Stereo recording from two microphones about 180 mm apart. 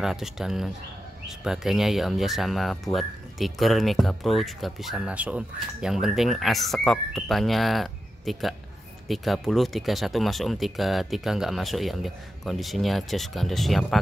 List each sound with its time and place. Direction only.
0.0 s speech: centre (ahead or behind)